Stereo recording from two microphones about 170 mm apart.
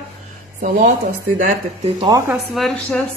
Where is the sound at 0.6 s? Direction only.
45° right (ahead or behind).